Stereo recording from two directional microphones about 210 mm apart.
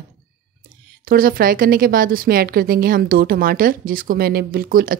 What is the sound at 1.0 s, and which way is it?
Speech, 45° right (ahead or behind).